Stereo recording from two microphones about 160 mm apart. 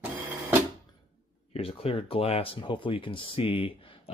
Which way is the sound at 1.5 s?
40° left (ahead or behind).